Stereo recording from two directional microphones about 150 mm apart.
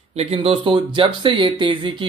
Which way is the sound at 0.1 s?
45° right (ahead or behind).